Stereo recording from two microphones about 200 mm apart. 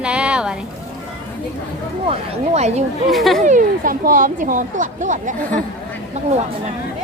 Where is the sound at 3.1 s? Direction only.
Centre (ahead or behind).